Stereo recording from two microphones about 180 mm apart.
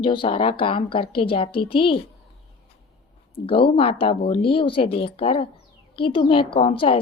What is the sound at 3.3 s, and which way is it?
A woman's voice, 30° left (ahead or behind).